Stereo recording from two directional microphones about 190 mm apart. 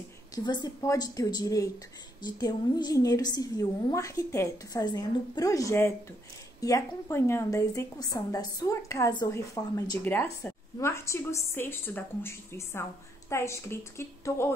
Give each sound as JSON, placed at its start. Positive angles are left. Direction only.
{"t": 0.3, "sound": "a woman's voice", "side_deg": 20}